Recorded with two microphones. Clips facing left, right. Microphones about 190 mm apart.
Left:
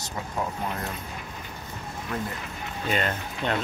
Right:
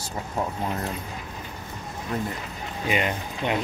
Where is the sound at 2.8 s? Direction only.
15° right (ahead or behind).